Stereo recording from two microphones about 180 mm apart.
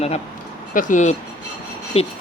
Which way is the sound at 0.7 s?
50° left (ahead or behind).